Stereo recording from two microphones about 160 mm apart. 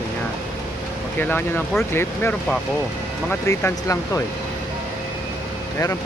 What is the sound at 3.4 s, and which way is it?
Speech, 20° left (ahead or behind).